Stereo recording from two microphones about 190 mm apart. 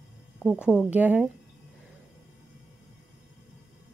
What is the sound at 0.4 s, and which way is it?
Speech, 5° right (ahead or behind).